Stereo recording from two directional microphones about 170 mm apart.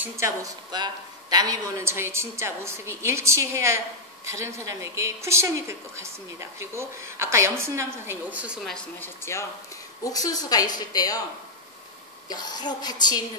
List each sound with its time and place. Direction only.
0.0 s a woman's voice: 15° right (ahead or behind)
8.6 s a woman's voice: 10° left (ahead or behind)
12.3 s a woman's voice: 25° left (ahead or behind)